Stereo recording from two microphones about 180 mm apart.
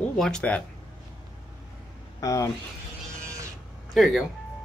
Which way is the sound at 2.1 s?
20° left (ahead or behind).